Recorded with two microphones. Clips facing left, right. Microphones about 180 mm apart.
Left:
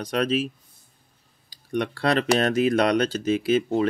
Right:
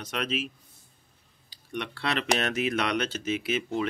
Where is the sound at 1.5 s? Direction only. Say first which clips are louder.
Left 9 dB; 40° left (ahead or behind).